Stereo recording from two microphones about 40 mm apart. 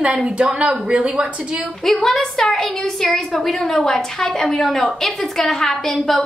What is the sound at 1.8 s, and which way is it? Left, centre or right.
A woman's voice, centre.